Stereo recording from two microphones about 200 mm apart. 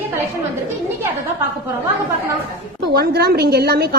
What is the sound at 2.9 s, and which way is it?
A woman's voice, 50° right (ahead or behind).